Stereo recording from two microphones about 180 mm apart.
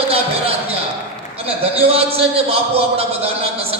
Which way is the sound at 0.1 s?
35° right (ahead or behind).